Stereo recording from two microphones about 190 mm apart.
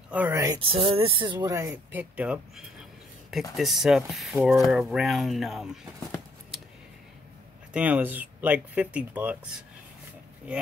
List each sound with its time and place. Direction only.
0.1 s speech: 10° right (ahead or behind)
0.6 s speech: 30° right (ahead or behind); by 5.8 s centre (ahead or behind)
7.7 s speech: 5° right (ahead or behind)